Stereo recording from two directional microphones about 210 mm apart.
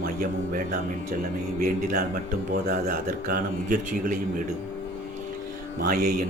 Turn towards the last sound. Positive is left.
turn(degrees=-40)  # may be behind; listen again after turning